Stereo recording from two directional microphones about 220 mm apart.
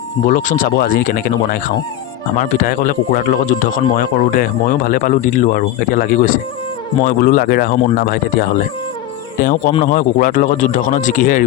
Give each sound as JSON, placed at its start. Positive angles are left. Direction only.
{"t": 0.3, "sound": "speech", "side_deg": 35}